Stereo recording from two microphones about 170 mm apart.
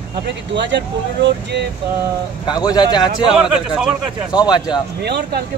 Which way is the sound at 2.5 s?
25° left (ahead or behind).